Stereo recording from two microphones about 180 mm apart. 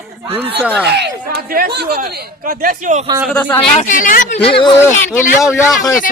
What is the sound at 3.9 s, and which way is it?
Speech, 50° left (ahead or behind).